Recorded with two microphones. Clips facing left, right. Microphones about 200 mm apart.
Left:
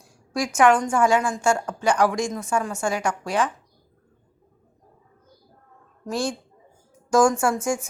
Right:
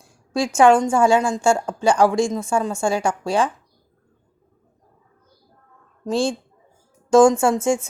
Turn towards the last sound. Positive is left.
turn(degrees=-25)  # may be behind; listen again after turning